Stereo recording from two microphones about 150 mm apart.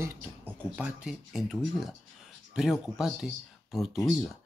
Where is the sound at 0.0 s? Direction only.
15° right (ahead or behind).